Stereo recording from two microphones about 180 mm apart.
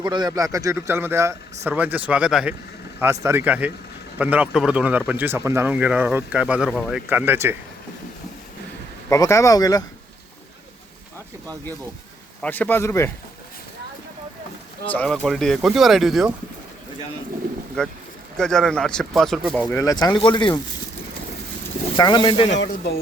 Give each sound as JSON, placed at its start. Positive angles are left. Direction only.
{"t": 0.0, "sound": "speech", "side_deg": -25}
{"t": 9.0, "sound": "speech", "side_deg": 15}
{"t": 12.4, "sound": "speech", "side_deg": 10}
{"t": 14.8, "sound": "speech", "side_deg": 5}
{"t": 18.3, "sound": "speech", "side_deg": 5}
{"t": 21.9, "sound": "speech", "side_deg": 25}